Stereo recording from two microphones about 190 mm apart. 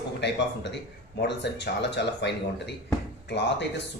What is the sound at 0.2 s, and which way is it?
Speech, 65° left (ahead or behind).